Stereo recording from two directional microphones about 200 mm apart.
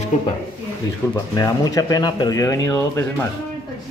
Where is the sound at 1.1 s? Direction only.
20° left (ahead or behind).